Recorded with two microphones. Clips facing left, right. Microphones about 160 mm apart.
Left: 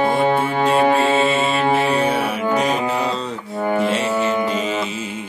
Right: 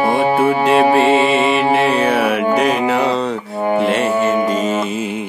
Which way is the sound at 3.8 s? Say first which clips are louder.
Right 4 dB; 55° right (ahead or behind).